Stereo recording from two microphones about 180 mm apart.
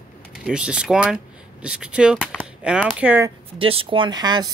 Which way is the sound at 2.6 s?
5° right (ahead or behind).